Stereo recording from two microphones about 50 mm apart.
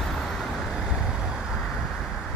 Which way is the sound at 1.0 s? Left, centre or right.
Centre.